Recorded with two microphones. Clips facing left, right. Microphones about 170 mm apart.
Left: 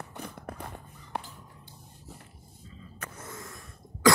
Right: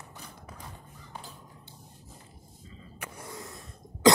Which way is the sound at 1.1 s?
70° left (ahead or behind).